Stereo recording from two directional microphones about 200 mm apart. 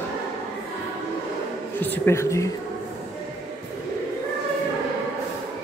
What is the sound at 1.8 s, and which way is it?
Speech, 10° left (ahead or behind).